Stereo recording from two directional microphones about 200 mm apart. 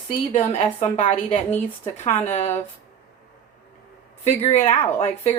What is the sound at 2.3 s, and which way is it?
Speech, 35° left (ahead or behind).